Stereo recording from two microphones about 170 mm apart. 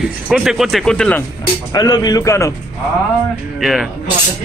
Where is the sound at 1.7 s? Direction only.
20° left (ahead or behind).